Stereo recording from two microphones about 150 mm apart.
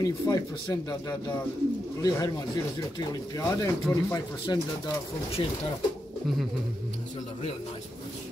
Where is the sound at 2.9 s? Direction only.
25° left (ahead or behind).